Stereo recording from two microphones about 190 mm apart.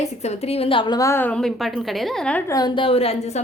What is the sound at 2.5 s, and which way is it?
Speech, 20° left (ahead or behind).